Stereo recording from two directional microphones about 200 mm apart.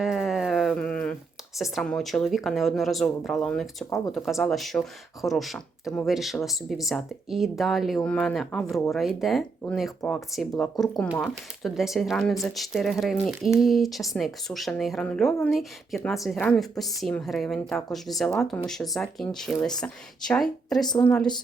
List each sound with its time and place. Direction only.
0.0 s a sound: centre (ahead or behind)
1.5 s speech: centre (ahead or behind)
3.8 s speech: 15° left (ahead or behind)
4.1 s speech: centre (ahead or behind)
20.8 s a woman's voice: 20° left (ahead or behind)